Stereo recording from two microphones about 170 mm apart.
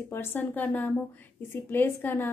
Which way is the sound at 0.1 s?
10° left (ahead or behind).